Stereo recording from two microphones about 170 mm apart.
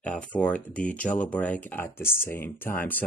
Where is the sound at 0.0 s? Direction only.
5° left (ahead or behind).